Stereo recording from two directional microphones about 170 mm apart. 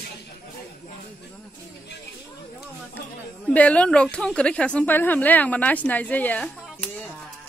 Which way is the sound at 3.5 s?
5° left (ahead or behind).